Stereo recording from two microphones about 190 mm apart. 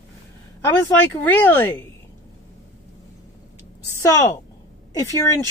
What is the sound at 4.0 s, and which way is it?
A woman's voice, 20° left (ahead or behind).